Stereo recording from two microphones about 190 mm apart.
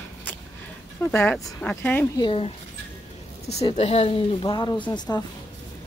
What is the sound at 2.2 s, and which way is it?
Speech, 30° left (ahead or behind).